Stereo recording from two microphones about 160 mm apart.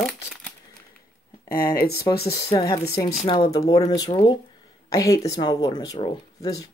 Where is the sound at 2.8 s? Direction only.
20° left (ahead or behind).